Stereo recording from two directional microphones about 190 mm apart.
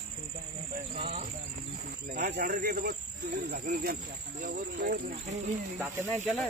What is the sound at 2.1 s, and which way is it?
Speech, 55° right (ahead or behind).